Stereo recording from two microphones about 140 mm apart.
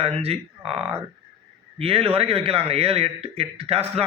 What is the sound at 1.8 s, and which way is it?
Speech, 40° right (ahead or behind).